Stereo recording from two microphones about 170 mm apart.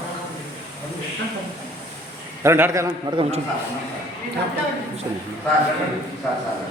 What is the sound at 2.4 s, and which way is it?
Speech, 15° right (ahead or behind).